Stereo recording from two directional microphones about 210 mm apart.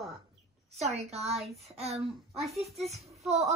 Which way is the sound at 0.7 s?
30° right (ahead or behind).